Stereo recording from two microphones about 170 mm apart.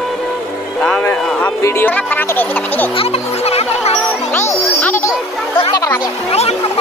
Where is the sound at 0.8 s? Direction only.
5° left (ahead or behind).